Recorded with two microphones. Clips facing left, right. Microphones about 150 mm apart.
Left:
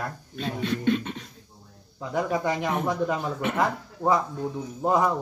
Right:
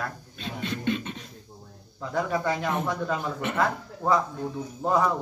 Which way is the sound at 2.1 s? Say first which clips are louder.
Left 1 dB; 15° left (ahead or behind).